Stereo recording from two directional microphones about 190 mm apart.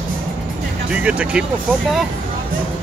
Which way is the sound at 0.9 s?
5° right (ahead or behind).